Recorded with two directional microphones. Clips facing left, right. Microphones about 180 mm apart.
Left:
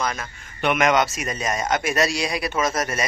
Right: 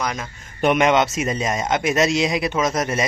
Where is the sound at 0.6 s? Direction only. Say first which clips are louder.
Right 3 dB; 35° right (ahead or behind).